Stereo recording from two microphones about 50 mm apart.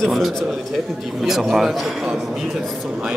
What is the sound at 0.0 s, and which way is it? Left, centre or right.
Speech, centre.